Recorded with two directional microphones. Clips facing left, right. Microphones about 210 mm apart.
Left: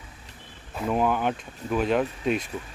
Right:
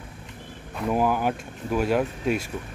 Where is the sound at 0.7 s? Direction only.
5° right (ahead or behind).